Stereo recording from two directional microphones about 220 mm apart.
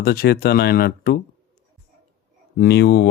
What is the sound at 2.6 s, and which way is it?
Speech, 45° left (ahead or behind).